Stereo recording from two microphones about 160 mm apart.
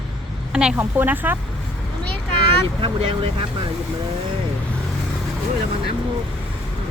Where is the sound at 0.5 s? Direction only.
5° right (ahead or behind).